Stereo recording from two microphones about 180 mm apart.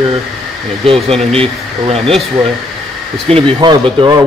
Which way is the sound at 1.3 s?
30° right (ahead or behind).